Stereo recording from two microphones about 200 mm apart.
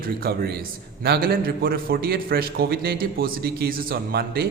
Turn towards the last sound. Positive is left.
turn(degrees=-50)  # may be behind; listen again after turning